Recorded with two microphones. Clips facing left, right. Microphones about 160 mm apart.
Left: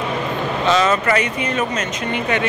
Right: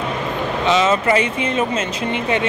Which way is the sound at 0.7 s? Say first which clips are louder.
Right 1 dB; 20° right (ahead or behind).